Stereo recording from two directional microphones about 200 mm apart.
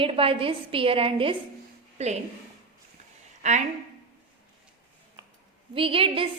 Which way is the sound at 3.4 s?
35° right (ahead or behind).